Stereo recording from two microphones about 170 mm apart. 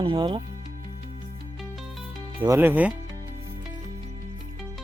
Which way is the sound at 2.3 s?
15° right (ahead or behind).